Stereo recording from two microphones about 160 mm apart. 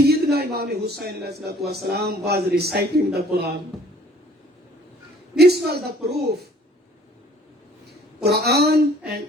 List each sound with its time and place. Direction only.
0.0 s a man's voice: 80° right
5.4 s speech: 90° right
8.2 s speech: 80° right